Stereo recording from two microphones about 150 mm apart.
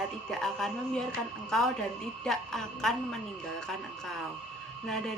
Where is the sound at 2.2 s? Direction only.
5° left (ahead or behind).